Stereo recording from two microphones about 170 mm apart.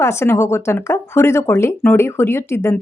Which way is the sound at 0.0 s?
15° left (ahead or behind).